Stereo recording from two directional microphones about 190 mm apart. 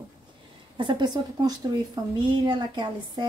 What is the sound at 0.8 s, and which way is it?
A woman's voice, 25° right (ahead or behind).